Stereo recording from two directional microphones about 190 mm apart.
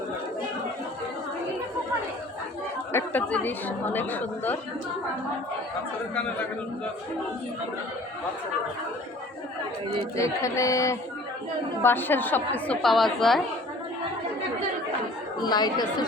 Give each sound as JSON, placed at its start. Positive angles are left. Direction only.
{"t": 2.9, "sound": "a woman's voice", "side_deg": 10}
{"t": 10.2, "sound": "a woman's voice", "side_deg": 15}
{"t": 15.4, "sound": "speech", "side_deg": 20}